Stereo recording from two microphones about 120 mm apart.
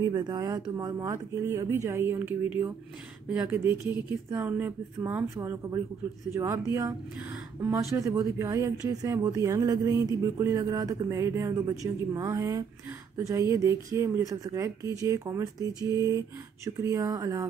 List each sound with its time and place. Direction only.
0.0 s speech: 30° right (ahead or behind)